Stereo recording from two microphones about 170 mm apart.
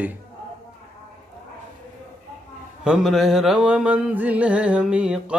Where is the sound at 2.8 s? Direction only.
5° right (ahead or behind).